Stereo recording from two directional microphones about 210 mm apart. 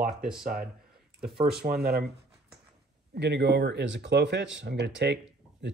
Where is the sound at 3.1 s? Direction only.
55° right (ahead or behind).